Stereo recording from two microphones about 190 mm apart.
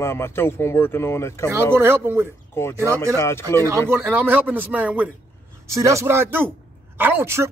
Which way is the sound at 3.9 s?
10° right (ahead or behind).